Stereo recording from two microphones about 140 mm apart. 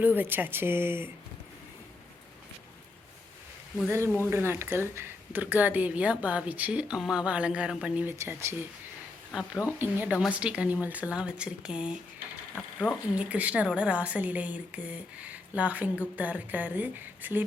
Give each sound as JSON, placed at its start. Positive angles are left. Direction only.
{"t": 0.0, "sound": "a woman's voice", "side_deg": -15}
{"t": 3.8, "sound": "a woman's voice", "side_deg": -20}
{"t": 8.2, "sound": "speech", "side_deg": -20}
{"t": 9.3, "sound": "a woman's voice", "side_deg": -5}
{"t": 12.5, "sound": "mechanisms", "side_deg": 5}
{"t": 13.1, "sound": "a woman's voice", "side_deg": -10}